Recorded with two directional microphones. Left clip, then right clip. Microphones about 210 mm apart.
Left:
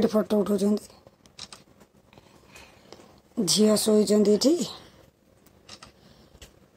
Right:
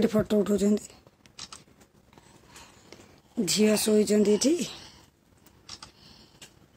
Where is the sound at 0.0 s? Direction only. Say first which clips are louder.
Left 1 dB; 5° right (ahead or behind).